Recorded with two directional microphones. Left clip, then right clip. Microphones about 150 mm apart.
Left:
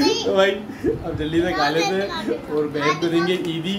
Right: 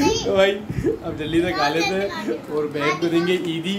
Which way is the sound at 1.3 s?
5° right (ahead or behind).